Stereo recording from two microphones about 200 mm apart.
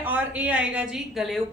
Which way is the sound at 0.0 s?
10° right (ahead or behind).